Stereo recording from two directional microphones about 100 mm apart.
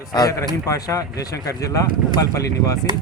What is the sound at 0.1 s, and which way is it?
Speech, 40° left (ahead or behind).